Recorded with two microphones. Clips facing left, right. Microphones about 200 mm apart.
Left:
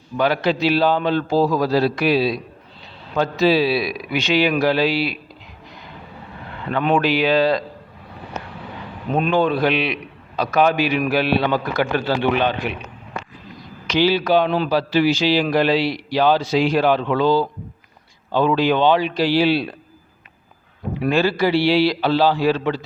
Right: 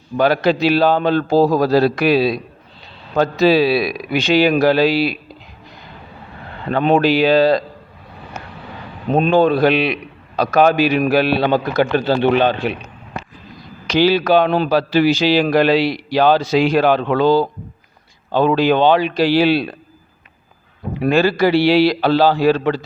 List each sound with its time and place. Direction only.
0.2 s a man's voice: 40° right (ahead or behind)
6.7 s a man's voice: 30° right (ahead or behind)
9.0 s a man's voice: 30° right (ahead or behind)
14.1 s speech: 90° right
14.9 s a man's voice: 40° right (ahead or behind)
15.5 s speech: 90° right; by 17.2 s 70° right (ahead or behind)
17.2 s a man's voice: 40° right (ahead or behind)
18.9 s speech: 85° right
21.0 s a man's voice: 40° right (ahead or behind)